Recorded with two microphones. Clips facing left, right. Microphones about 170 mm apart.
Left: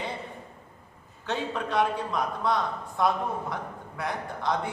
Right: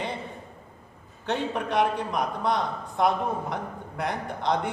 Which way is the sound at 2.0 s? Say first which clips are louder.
Right 1 dB; 20° right (ahead or behind).